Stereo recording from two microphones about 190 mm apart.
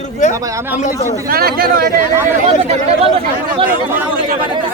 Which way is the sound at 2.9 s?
30° right (ahead or behind).